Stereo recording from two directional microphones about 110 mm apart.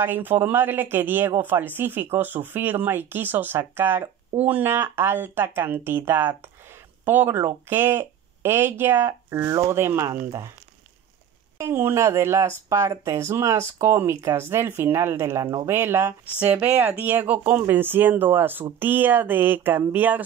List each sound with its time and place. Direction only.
0.0 s speech: 20° right (ahead or behind)
11.5 s speech: 25° right (ahead or behind)